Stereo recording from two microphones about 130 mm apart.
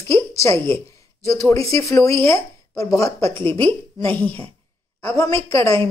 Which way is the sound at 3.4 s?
40° right (ahead or behind).